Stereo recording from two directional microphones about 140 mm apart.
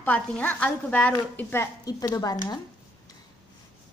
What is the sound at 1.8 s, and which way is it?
Speech, 25° left (ahead or behind).